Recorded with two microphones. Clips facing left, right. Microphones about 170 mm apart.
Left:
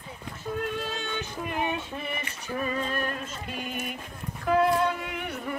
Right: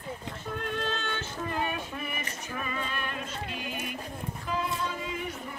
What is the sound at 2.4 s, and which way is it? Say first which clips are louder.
Music: left 7 dB; 35° left (ahead or behind).